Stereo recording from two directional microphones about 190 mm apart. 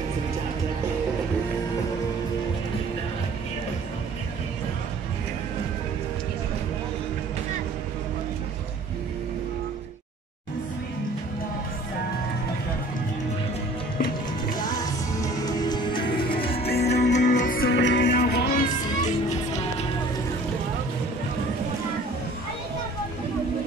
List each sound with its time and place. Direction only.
14.0 s music: 20° left (ahead or behind)
16.7 s music: 60° left (ahead or behind)
17.4 s music: 50° left (ahead or behind)